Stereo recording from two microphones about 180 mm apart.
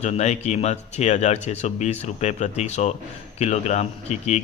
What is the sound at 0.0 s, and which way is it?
Speech, 40° left (ahead or behind).